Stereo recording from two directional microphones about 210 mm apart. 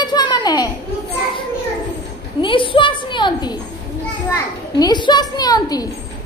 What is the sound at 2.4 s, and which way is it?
A woman's voice, 25° left (ahead or behind).